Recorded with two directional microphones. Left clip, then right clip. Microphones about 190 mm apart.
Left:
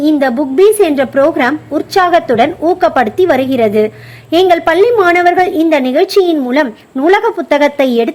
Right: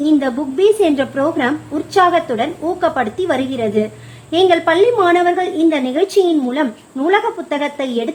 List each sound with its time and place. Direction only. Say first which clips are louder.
0.0 s a woman's voice: left 5 dB; 20° left (ahead or behind)